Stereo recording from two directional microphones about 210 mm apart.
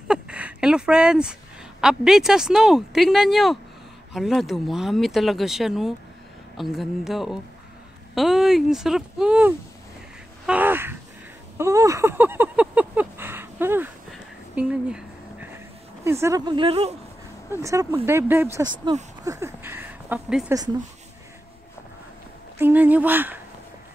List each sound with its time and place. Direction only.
0.1 s a sound: 5° right (ahead or behind)
1.8 s speech: 5° right (ahead or behind)
11.5 s a sound: 15° right (ahead or behind)
16.0 s speech: 10° right (ahead or behind)
17.5 s speech: 15° right (ahead or behind)
22.6 s speech: 10° right (ahead or behind)